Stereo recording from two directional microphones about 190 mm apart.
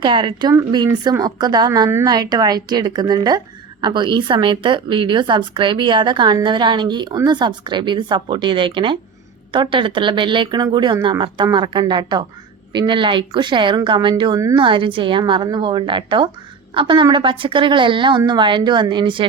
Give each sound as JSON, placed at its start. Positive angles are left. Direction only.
{"t": 0.0, "sound": "speech", "side_deg": -25}